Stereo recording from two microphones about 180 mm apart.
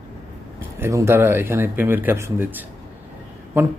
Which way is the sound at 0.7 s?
15° right (ahead or behind).